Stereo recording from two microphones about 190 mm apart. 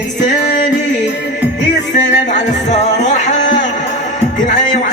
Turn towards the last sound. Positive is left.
turn(degrees=35)  # may be behind; listen again after turning